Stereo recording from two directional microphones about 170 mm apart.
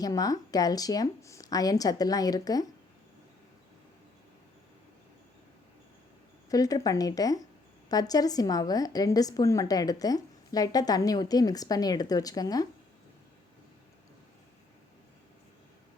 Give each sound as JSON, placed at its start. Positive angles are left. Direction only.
{"t": 0.0, "sound": "a woman's voice", "side_deg": 20}
{"t": 6.5, "sound": "a woman's voice", "side_deg": 20}